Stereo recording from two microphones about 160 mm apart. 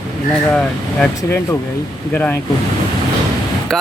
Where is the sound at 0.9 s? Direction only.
5° left (ahead or behind).